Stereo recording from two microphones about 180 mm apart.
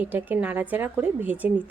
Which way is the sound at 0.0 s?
10° right (ahead or behind).